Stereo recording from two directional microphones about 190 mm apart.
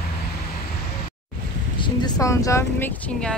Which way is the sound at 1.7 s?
25° left (ahead or behind).